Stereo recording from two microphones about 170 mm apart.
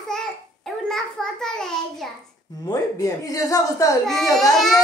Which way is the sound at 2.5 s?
20° left (ahead or behind).